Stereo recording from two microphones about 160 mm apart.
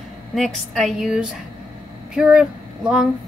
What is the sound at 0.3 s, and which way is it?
A woman's voice, centre (ahead or behind).